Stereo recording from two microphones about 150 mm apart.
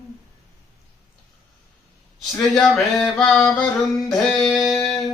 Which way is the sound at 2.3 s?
Centre (ahead or behind).